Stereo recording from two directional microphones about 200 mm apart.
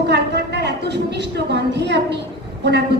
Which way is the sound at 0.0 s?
55° right (ahead or behind).